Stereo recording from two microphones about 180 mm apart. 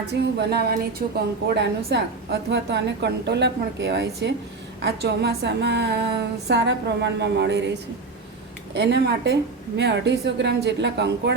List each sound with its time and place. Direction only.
0.1 s a woman's voice: 65° right (ahead or behind)